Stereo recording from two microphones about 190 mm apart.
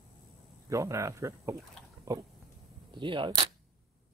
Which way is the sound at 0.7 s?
15° right (ahead or behind).